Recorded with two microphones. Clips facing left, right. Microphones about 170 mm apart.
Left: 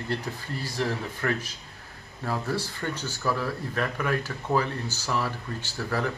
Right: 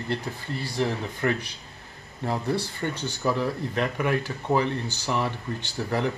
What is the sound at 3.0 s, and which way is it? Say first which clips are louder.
Speech: right 3 dB; 20° right (ahead or behind).